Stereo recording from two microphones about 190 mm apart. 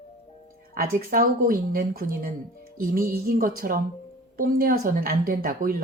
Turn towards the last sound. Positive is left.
turn(degrees=-50)  # may be behind; listen again after turning